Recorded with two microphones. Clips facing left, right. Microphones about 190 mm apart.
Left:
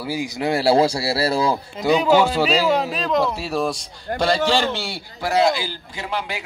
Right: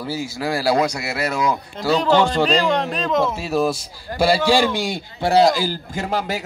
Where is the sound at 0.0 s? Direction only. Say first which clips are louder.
Left 1 dB; 15° left (ahead or behind); by 1.6 s 30° left (ahead or behind).